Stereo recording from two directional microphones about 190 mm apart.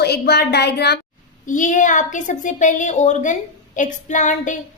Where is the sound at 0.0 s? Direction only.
60° left (ahead or behind).